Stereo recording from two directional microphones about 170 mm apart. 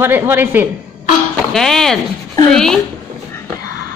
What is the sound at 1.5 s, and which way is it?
A woman's voice, 5° left (ahead or behind).